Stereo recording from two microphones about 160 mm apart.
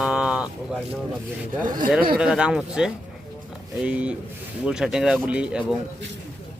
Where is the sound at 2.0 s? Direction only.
70° right (ahead or behind).